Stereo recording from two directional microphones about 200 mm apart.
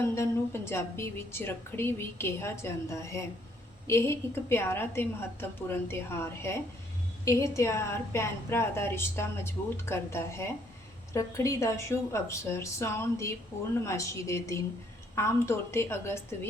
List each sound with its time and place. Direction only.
0.0 s a woman's voice: 15° left (ahead or behind)